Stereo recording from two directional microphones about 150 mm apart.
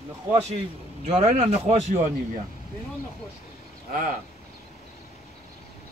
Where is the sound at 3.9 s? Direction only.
60° right (ahead or behind).